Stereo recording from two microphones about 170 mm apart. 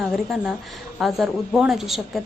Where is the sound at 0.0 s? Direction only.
Centre (ahead or behind).